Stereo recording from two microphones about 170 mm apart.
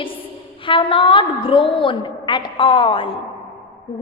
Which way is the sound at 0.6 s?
30° left (ahead or behind).